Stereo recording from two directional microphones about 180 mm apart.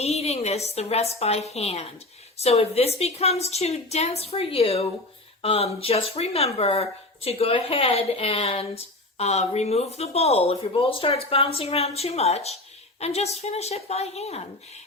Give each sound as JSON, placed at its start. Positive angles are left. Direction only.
{"t": 0.0, "sound": "speech", "side_deg": 35}